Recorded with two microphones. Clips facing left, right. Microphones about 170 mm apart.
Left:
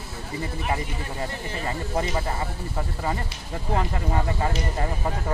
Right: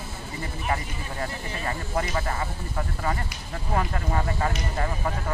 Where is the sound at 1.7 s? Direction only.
20° left (ahead or behind).